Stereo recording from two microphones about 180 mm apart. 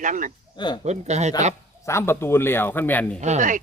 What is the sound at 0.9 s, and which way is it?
Speech, 40° right (ahead or behind).